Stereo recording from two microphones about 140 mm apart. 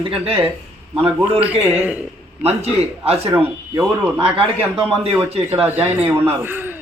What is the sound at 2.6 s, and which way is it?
Speech, 45° right (ahead or behind).